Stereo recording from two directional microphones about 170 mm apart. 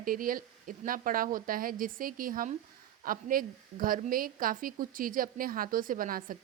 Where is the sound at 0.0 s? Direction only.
55° right (ahead or behind).